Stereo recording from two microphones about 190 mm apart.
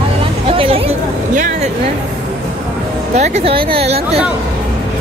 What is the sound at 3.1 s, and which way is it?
Speech, 35° right (ahead or behind).